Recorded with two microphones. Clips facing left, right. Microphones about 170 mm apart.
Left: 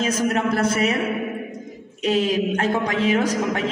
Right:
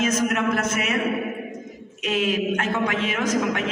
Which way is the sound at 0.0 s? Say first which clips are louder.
Left 1 dB; 35° left (ahead or behind).